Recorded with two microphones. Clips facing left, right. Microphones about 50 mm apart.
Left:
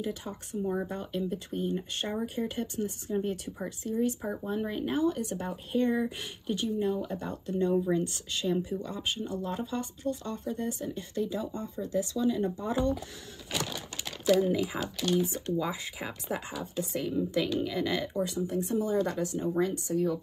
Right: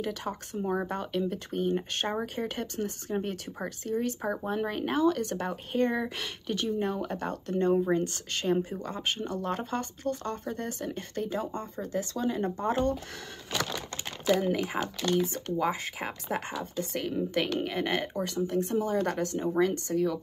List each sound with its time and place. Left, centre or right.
0.0 s speech: right
7.7 s speech: right
14.4 s speech: right
19.6 s speech: right